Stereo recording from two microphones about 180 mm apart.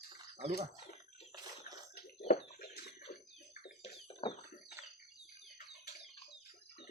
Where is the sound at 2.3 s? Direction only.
60° left (ahead or behind).